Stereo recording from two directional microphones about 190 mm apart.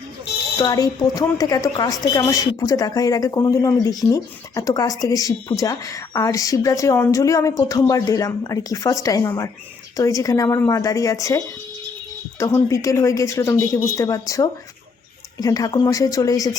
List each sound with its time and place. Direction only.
0.6 s a woman's voice: 20° left (ahead or behind)